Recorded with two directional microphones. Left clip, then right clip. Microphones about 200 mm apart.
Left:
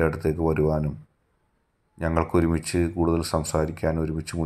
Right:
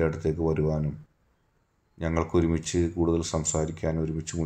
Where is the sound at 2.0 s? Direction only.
20° left (ahead or behind).